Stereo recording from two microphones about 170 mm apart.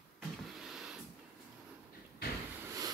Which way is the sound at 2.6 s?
20° right (ahead or behind).